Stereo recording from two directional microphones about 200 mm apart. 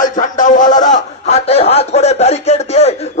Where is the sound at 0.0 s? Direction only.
40° left (ahead or behind).